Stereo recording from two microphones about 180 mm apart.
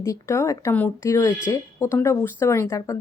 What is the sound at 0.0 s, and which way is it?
Speech, 15° left (ahead or behind).